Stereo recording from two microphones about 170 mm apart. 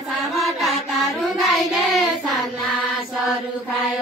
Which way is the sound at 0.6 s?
Centre (ahead or behind).